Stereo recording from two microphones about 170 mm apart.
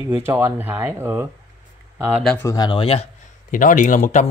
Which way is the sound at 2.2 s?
10° left (ahead or behind).